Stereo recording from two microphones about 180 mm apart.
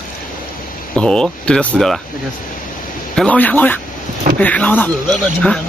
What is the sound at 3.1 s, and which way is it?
Speech, 5° left (ahead or behind).